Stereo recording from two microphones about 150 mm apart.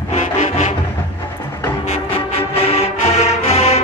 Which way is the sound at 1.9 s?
45° left (ahead or behind).